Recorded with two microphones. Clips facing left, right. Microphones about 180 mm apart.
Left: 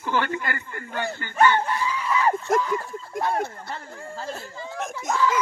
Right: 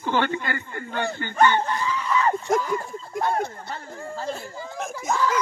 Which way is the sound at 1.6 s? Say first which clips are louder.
Even; 10° left (ahead or behind).